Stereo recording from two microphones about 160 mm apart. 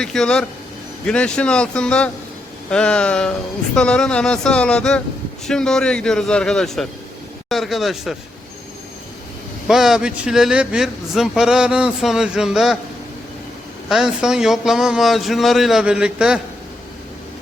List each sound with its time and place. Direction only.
0.0 s a man's voice: 5° left (ahead or behind)
9.6 s a man's voice: centre (ahead or behind)
13.9 s a man's voice: 5° right (ahead or behind)